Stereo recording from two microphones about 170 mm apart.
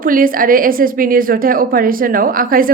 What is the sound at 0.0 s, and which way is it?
A woman's voice, 55° right (ahead or behind).